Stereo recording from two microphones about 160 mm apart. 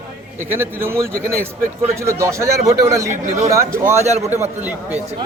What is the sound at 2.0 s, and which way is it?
A man's voice, 15° right (ahead or behind).